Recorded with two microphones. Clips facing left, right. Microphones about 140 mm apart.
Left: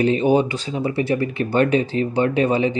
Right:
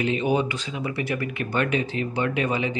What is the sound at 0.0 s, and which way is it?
Speech, 35° left (ahead or behind).